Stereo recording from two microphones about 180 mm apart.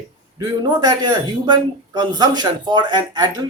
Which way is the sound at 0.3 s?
20° right (ahead or behind).